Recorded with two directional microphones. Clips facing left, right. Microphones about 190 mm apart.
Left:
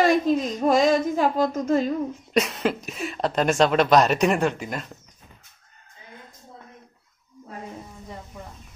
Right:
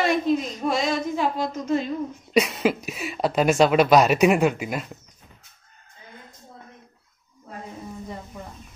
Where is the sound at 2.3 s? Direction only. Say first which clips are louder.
Right 3 dB; 5° right (ahead or behind).